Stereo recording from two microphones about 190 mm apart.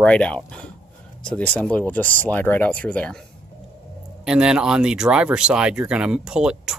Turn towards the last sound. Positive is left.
turn(degrees=-5)  # may be behind; listen again after turning